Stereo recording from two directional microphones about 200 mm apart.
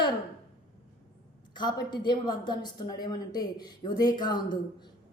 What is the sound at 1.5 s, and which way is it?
A woman's voice, 20° left (ahead or behind).